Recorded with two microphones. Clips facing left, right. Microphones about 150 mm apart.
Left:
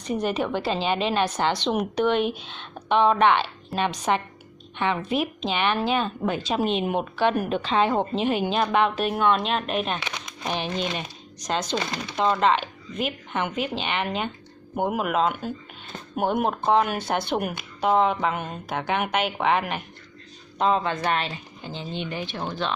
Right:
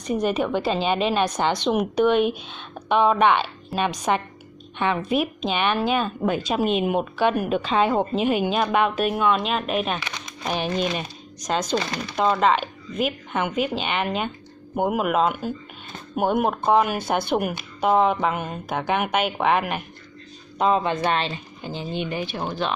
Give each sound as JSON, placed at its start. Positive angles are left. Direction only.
{"t": 0.0, "sound": "speech", "side_deg": -15}
{"t": 21.6, "sound": "speech", "side_deg": -10}